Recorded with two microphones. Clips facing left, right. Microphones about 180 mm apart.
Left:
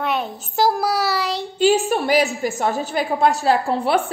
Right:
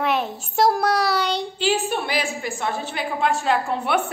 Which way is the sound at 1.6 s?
45° left (ahead or behind).